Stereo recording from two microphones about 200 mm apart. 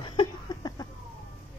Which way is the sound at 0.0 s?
25° left (ahead or behind).